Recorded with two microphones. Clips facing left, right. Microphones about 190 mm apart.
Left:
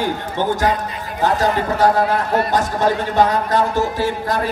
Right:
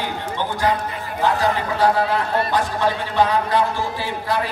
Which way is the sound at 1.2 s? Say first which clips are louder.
Left 2 dB; 45° left (ahead or behind).